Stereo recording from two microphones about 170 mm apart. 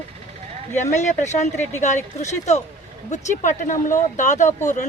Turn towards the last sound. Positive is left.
turn(degrees=45)  # may be behind; listen again after turning